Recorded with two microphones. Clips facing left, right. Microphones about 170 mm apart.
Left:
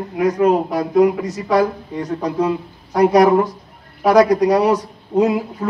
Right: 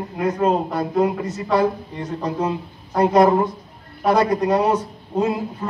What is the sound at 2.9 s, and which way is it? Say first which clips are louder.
A man's voice: left 3 dB; 75° left (ahead or behind).